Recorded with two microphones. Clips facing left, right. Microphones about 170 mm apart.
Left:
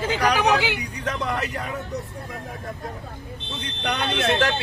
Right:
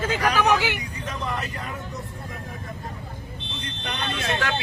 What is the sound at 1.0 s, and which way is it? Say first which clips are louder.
Speech: left 5 dB; 75° left (ahead or behind).